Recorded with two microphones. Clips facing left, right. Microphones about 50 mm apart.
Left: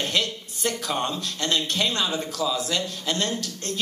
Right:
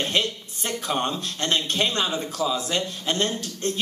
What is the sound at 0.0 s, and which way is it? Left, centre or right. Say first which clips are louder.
A man's voice: right 1 dB; right.